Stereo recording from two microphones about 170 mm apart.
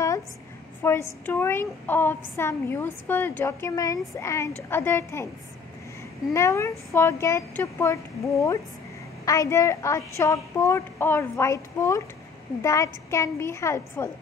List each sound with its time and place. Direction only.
0.8 s speech: 15° left (ahead or behind)
6.3 s speech: 15° left (ahead or behind)